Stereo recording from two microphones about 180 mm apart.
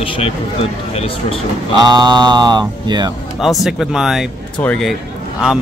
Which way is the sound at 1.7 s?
25° right (ahead or behind).